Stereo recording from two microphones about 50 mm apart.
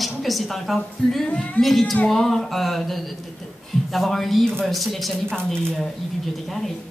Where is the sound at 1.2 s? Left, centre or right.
Left.